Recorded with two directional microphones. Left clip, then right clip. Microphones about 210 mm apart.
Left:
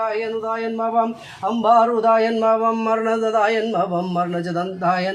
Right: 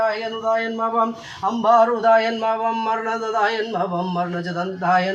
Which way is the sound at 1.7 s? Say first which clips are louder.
Right 1 dB; 40° left (ahead or behind).